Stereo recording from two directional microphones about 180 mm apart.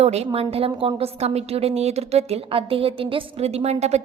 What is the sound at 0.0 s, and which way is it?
A woman's voice, 35° right (ahead or behind).